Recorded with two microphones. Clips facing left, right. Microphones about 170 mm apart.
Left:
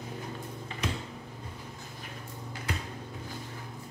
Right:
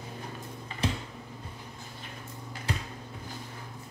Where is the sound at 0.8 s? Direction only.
30° right (ahead or behind).